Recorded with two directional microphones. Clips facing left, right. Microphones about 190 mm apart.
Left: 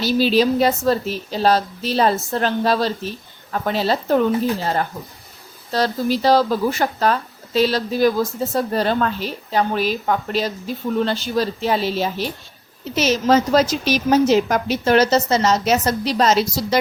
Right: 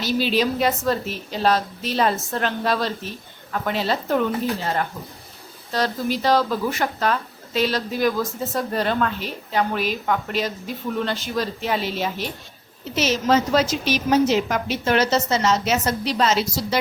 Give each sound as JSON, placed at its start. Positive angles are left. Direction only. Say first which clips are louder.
{"t": 0.0, "sound": "a woman's voice", "louder": "left 5 dB", "side_deg": 35}
{"t": 5.7, "sound": "a woman's voice", "louder": "left 4 dB", "side_deg": 35}